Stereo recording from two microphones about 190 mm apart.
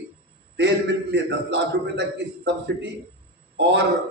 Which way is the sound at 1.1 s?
65° right (ahead or behind).